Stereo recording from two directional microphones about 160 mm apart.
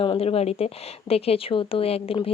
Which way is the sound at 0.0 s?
35° left (ahead or behind).